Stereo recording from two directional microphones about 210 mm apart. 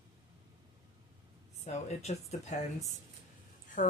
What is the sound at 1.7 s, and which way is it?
Speech, 30° left (ahead or behind).